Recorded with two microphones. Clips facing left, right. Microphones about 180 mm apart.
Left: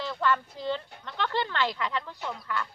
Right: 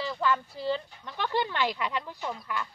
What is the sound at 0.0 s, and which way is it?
Speech, 10° right (ahead or behind).